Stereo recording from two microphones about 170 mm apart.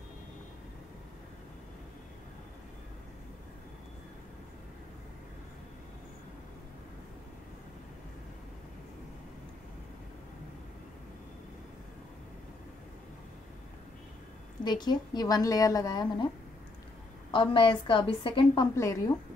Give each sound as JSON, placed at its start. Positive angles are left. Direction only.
{"t": 14.6, "sound": "a woman's voice", "side_deg": 25}
{"t": 17.3, "sound": "a woman's voice", "side_deg": 30}